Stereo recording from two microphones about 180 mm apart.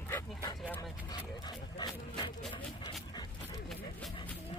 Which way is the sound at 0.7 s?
25° left (ahead or behind).